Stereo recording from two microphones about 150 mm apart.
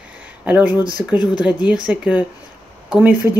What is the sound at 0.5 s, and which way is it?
Speech, 10° right (ahead or behind).